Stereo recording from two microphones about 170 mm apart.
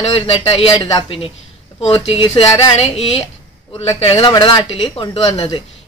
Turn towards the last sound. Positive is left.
turn(degrees=30)  # may be behind; listen again after turning